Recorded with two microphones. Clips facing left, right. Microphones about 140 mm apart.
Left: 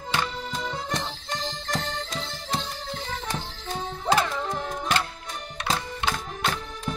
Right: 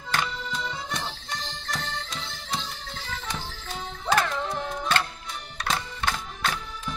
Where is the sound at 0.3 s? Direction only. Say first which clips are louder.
Left 2 dB; 45° left (ahead or behind).